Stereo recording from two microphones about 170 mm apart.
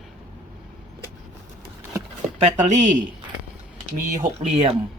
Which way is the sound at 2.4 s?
45° right (ahead or behind).